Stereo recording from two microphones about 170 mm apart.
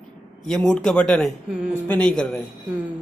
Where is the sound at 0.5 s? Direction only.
5° left (ahead or behind).